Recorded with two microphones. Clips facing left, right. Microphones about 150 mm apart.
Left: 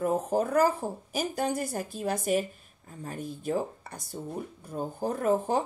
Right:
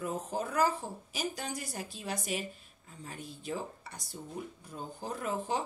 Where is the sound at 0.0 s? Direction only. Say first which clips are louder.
Left 9 dB; 55° left (ahead or behind).